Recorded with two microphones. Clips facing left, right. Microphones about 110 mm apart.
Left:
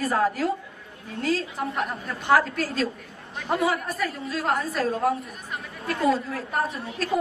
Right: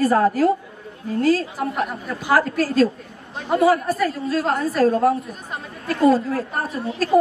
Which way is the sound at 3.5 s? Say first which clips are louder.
Right 8 dB; 35° right (ahead or behind).